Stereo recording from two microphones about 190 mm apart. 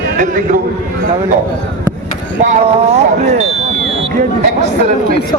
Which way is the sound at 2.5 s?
35° right (ahead or behind).